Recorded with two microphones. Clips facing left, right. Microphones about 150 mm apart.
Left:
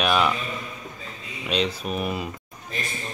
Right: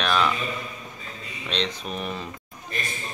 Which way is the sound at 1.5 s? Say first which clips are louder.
Left 4 dB; 5° left (ahead or behind).